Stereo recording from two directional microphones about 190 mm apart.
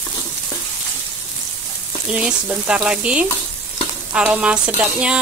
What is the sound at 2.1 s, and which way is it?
Frying, 5° right (ahead or behind).